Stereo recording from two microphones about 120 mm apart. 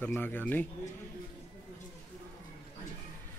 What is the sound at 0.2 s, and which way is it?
Speech, 15° left (ahead or behind).